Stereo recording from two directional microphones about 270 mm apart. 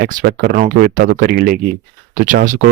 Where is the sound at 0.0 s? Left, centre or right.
Right.